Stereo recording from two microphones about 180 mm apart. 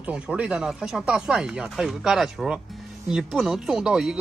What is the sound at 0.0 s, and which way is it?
Speech, 5° right (ahead or behind).